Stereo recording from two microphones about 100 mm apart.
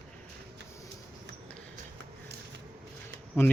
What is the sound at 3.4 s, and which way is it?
Speech, 25° left (ahead or behind).